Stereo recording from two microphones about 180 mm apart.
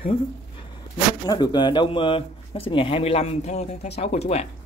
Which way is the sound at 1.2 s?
25° left (ahead or behind).